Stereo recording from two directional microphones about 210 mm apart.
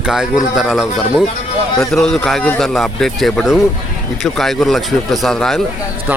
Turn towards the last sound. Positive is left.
turn(degrees=0)  # may be behind; listen again after turning